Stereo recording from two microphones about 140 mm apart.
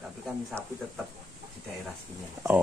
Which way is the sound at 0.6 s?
20° right (ahead or behind).